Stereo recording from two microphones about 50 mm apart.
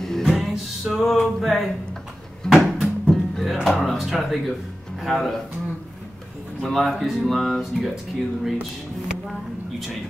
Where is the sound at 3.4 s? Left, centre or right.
Centre.